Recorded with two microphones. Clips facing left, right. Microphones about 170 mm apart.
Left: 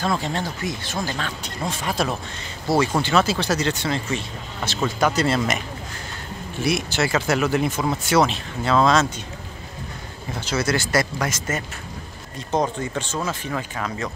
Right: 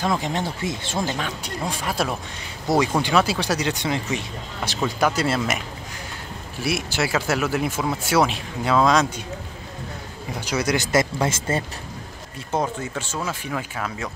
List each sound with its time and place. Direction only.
0.0 s speech: 15° right (ahead or behind)
1.1 s speech: 10° right (ahead or behind)
2.7 s speech: 20° right (ahead or behind)
6.6 s speech: 10° right (ahead or behind)
10.3 s speech: 15° right (ahead or behind); by 11.6 s 30° right (ahead or behind)
12.4 s speech: 5° right (ahead or behind)